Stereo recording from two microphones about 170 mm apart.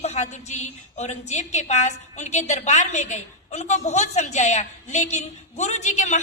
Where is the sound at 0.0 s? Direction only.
40° left (ahead or behind).